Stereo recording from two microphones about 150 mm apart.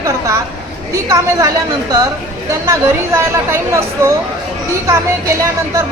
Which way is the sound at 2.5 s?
20° right (ahead or behind).